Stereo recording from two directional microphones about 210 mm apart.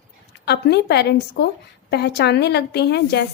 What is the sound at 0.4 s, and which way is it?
A woman's voice, 50° left (ahead or behind).